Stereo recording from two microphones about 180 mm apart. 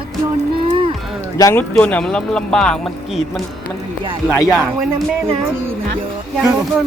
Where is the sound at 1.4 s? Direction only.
20° left (ahead or behind).